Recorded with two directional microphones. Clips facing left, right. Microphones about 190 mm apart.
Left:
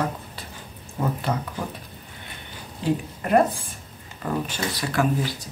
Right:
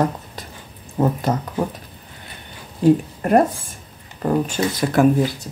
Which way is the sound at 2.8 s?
45° right (ahead or behind).